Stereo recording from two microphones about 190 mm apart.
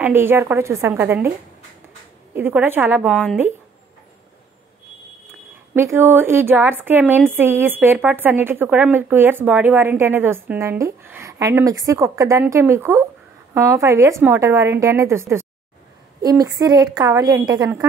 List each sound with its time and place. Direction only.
0.0 s a woman's voice: 10° right (ahead or behind)
2.3 s a woman's voice: 10° right (ahead or behind)
5.8 s a woman's voice: 10° right (ahead or behind)